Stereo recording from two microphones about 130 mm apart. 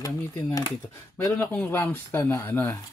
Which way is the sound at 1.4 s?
10° left (ahead or behind).